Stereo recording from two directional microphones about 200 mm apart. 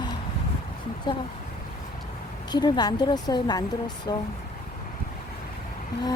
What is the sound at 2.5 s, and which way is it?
A woman's voice, 20° left (ahead or behind).